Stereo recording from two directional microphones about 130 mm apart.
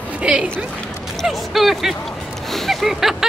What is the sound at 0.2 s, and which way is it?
Speech, 10° right (ahead or behind).